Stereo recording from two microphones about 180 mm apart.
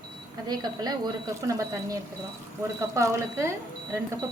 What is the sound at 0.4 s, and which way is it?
A woman's voice, 20° right (ahead or behind).